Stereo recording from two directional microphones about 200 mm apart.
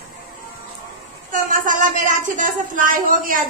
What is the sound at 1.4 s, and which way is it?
Speech, 40° right (ahead or behind).